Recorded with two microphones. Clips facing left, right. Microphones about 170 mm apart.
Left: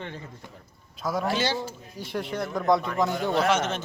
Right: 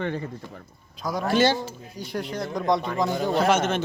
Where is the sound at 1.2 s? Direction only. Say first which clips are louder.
Right 8 dB; 50° right (ahead or behind).